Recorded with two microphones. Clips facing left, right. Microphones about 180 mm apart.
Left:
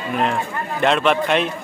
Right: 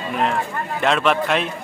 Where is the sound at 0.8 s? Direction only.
Centre (ahead or behind).